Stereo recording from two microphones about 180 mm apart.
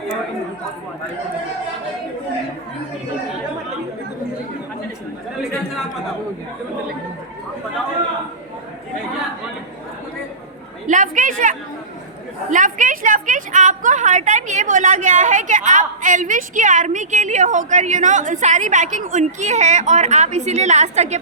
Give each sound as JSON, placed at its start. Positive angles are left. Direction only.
{"t": 10.8, "sound": "a woman's voice", "side_deg": -45}